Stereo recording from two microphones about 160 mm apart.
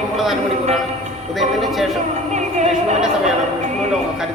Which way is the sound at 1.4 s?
Centre (ahead or behind).